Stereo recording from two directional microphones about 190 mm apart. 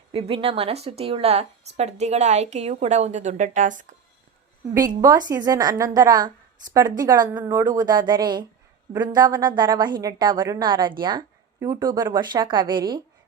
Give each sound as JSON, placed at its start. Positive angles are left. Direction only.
{"t": 0.1, "sound": "a woman's voice", "side_deg": -30}
{"t": 4.7, "sound": "a woman's voice", "side_deg": -20}